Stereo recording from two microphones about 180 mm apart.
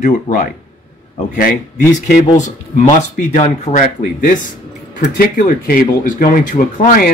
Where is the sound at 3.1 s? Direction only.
40° left (ahead or behind).